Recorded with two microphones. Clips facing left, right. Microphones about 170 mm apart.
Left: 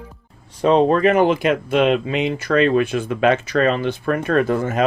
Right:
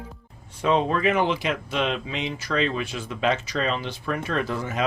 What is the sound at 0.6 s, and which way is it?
Speech, 40° left (ahead or behind).